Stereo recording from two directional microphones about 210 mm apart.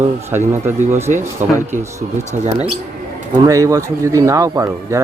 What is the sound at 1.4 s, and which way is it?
Speech, 35° right (ahead or behind).